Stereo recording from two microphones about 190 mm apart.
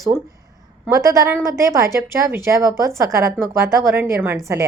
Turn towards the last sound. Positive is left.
turn(degrees=-10)  # may be behind; listen again after turning